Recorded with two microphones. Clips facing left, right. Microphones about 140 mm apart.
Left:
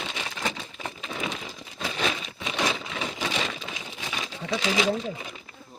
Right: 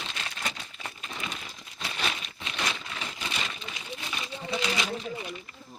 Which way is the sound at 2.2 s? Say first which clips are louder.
Left 6 dB; 90° left.